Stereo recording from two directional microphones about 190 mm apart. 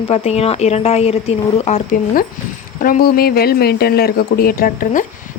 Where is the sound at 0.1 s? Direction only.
35° left (ahead or behind).